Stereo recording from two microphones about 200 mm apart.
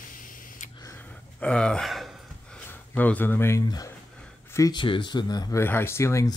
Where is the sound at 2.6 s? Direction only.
10° left (ahead or behind).